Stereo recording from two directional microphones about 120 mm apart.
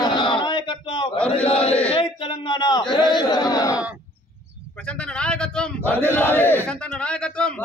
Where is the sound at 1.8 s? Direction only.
45° left (ahead or behind).